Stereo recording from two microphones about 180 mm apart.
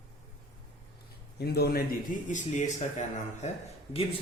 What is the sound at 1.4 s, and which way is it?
Speech, 60° left (ahead or behind).